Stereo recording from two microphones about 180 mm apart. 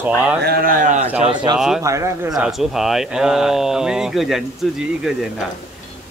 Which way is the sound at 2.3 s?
Centre (ahead or behind).